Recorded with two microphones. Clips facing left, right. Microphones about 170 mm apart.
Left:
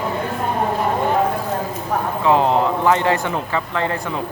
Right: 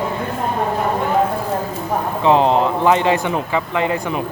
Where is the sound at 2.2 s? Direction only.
20° right (ahead or behind).